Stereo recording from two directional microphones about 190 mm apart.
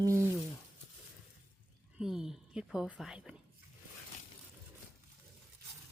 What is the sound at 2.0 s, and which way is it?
A woman's voice, 5° right (ahead or behind).